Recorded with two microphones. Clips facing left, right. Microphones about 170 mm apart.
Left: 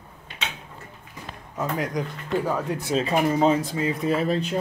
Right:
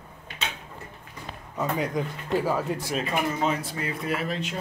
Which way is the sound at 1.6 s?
Centre (ahead or behind).